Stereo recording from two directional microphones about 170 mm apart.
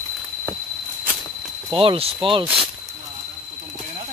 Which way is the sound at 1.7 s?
30° right (ahead or behind).